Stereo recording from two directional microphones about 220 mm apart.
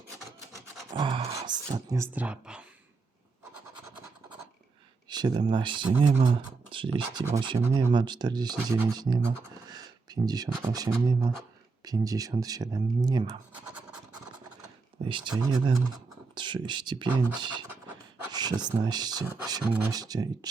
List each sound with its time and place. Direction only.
0.9 s a sound: 20° right (ahead or behind); by 2.6 s 5° right (ahead or behind)
5.0 s speech: 20° right (ahead or behind)
13.5 s scratch: 5° right (ahead or behind)
15.0 s speech: 20° right (ahead or behind)